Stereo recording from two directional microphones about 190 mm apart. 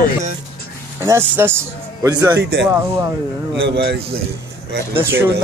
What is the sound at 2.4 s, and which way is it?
Speech, 60° right (ahead or behind).